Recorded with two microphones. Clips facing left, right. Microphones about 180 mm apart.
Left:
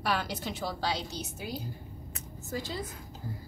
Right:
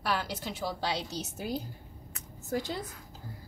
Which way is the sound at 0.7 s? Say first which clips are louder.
Left 1 dB; 25° right (ahead or behind).